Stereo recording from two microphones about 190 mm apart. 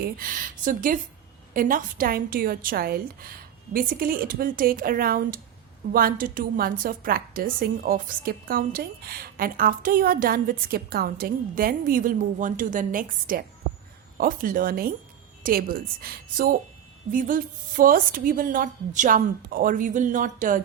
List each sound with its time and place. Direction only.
0.0 s a woman's voice: 45° right (ahead or behind)